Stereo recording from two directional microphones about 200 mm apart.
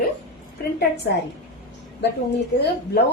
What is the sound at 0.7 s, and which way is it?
Speech, 55° left (ahead or behind).